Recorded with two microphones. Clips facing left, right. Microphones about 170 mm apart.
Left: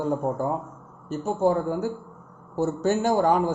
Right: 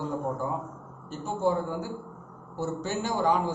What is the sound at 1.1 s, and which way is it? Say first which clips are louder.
A man's voice: left 5 dB; 45° left (ahead or behind).